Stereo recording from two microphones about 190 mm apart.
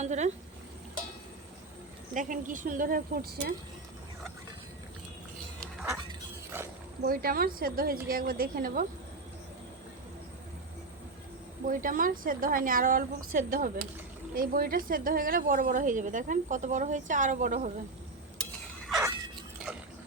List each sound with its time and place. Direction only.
0.0 s speech: 35° right (ahead or behind)
2.1 s a woman's voice: 45° right (ahead or behind)
5.8 s a sound: 20° right (ahead or behind)
7.0 s a woman's voice: 50° right (ahead or behind)
11.6 s a woman's voice: 45° right (ahead or behind)